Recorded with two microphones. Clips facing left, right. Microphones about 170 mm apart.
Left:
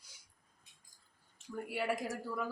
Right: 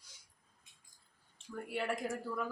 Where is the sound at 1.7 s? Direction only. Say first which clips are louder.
Even; 5° left (ahead or behind).